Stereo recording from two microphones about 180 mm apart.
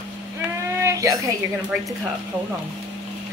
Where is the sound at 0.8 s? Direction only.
15° right (ahead or behind).